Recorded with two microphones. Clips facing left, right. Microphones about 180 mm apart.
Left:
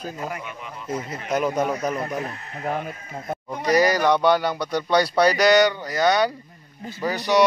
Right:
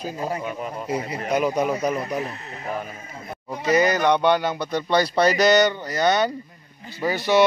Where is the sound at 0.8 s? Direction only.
65° right (ahead or behind).